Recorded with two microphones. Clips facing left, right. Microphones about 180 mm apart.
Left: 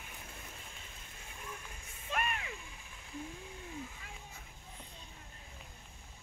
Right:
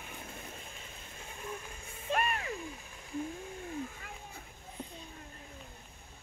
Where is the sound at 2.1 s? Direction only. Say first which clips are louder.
Right 5 dB; 40° right (ahead or behind).